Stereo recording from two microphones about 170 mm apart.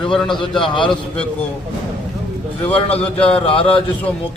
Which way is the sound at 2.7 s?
35° left (ahead or behind).